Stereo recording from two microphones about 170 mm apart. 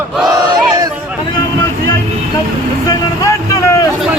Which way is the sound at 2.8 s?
20° left (ahead or behind).